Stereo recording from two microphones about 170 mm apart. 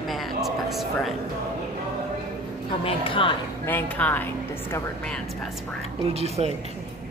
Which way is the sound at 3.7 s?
10° left (ahead or behind).